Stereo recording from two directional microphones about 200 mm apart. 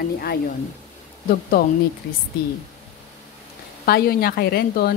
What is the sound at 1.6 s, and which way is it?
Speech, 50° left (ahead or behind).